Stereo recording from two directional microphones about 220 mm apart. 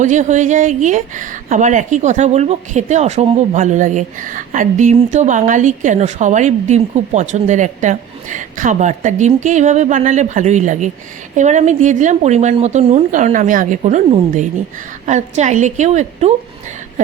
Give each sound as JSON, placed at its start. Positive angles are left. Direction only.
{"t": 0.0, "sound": "speech", "side_deg": -35}